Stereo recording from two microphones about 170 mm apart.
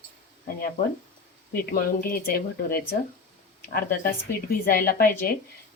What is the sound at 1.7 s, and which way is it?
Speech, 60° left (ahead or behind).